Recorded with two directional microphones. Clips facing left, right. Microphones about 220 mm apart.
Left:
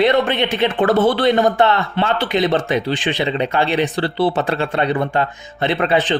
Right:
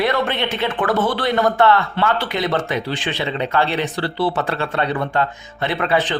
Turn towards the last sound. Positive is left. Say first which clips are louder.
# left 3 dB
turn(degrees=20)  # may be behind; listen again after turning